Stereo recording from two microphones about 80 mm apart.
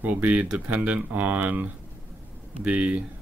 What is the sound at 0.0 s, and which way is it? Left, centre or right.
Speech, centre.